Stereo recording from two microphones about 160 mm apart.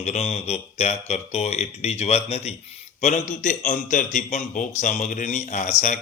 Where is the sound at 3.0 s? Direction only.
50° left (ahead or behind).